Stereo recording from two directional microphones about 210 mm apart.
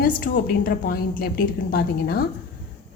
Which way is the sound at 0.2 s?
45° left (ahead or behind).